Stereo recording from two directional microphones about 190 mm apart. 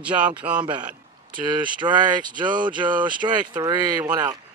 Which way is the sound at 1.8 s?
25° right (ahead or behind).